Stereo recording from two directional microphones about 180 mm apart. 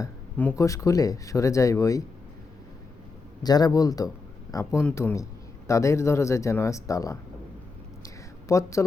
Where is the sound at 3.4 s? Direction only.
20° left (ahead or behind).